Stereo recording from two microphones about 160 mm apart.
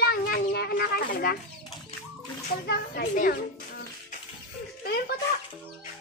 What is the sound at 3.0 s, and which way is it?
Speech, 65° left (ahead or behind).